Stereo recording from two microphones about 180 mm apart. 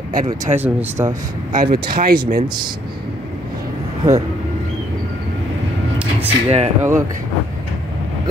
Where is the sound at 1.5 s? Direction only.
55° right (ahead or behind).